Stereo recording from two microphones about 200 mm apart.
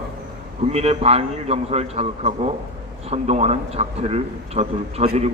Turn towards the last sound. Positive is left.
turn(degrees=-30)  # may be behind; listen again after turning